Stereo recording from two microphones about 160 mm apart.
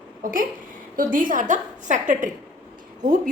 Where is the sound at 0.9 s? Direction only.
60° right (ahead or behind).